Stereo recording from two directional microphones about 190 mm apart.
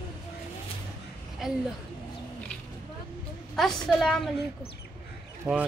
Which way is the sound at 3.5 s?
Centre (ahead or behind).